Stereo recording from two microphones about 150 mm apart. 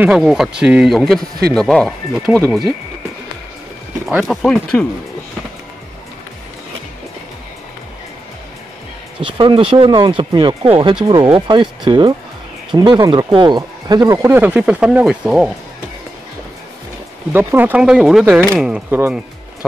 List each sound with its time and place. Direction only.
0.0 s speech: 5° right (ahead or behind)
4.2 s speech: centre (ahead or behind)
9.2 s speech: 35° right (ahead or behind); by 15.5 s 5° right (ahead or behind)
17.3 s speech: 15° right (ahead or behind)